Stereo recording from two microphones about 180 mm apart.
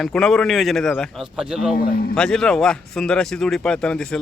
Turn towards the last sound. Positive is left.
turn(degrees=5)  # may be behind; listen again after turning